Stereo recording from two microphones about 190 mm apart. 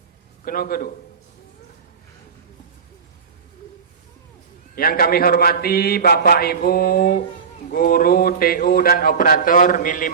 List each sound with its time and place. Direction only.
0.4 s a man's voice: 50° left (ahead or behind)
4.7 s a man's voice: 50° left (ahead or behind)